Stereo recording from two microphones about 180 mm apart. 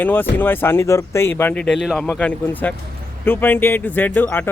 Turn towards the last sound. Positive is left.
turn(degrees=10)  # may be behind; listen again after turning